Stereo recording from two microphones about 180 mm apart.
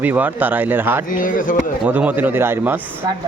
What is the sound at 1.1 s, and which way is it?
Speech, 50° left (ahead or behind).